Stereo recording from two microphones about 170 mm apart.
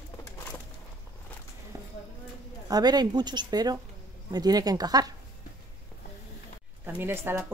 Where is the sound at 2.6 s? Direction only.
25° right (ahead or behind).